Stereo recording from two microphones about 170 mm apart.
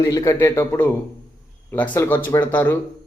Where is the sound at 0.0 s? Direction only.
20° left (ahead or behind).